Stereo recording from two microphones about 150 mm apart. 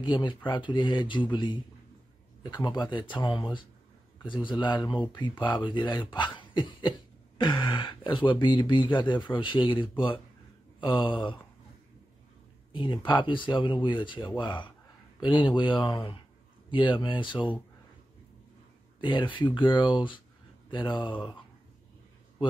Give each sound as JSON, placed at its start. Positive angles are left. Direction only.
{"t": 0.0, "sound": "speech", "side_deg": 30}
{"t": 10.8, "sound": "a sound", "side_deg": 30}
{"t": 12.7, "sound": "speech", "side_deg": 30}
{"t": 18.9, "sound": "speech", "side_deg": 30}